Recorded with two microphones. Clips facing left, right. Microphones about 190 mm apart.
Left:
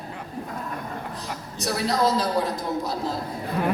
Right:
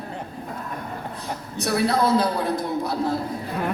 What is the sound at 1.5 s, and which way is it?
A man's voice, 60° right (ahead or behind).